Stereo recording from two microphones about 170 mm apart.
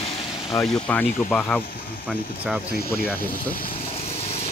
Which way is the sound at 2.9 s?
15° left (ahead or behind).